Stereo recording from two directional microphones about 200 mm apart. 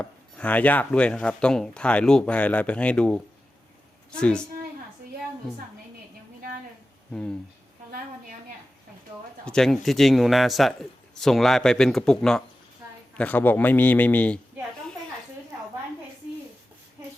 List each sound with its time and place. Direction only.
0.0 s speech: 5° left (ahead or behind)
7.1 s speech: 5° left (ahead or behind)
7.9 s a sound: 45° right (ahead or behind)
9.5 s a man's voice: centre (ahead or behind)